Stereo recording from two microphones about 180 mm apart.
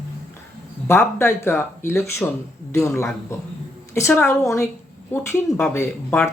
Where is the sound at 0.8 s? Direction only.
15° left (ahead or behind).